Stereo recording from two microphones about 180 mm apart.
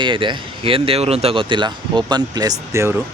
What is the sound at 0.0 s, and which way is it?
Speech, 25° right (ahead or behind).